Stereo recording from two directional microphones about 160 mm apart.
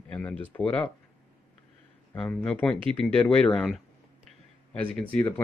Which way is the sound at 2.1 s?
10° left (ahead or behind).